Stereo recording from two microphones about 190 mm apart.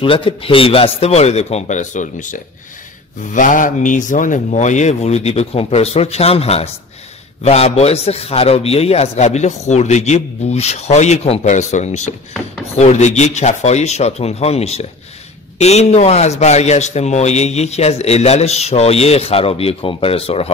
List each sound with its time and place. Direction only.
0.0 s a man's voice: 25° left (ahead or behind)